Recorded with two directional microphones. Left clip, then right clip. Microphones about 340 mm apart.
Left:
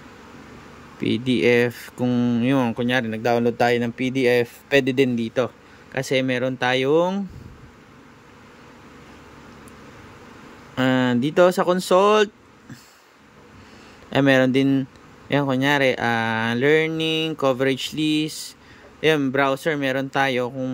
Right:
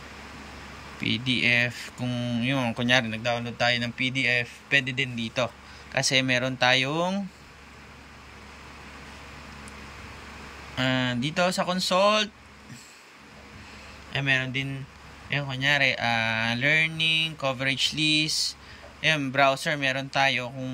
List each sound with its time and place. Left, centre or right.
1.0 s speech: centre
10.8 s speech: centre
14.1 s speech: centre